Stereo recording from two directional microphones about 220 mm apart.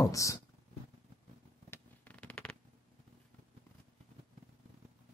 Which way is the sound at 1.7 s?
5° left (ahead or behind).